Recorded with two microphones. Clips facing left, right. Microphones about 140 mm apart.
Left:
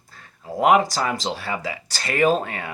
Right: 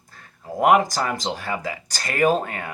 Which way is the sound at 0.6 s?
45° right (ahead or behind).